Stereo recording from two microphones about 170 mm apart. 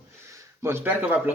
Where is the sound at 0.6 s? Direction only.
15° right (ahead or behind).